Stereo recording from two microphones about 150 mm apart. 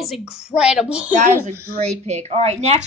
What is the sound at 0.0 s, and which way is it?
A child's voice, centre (ahead or behind).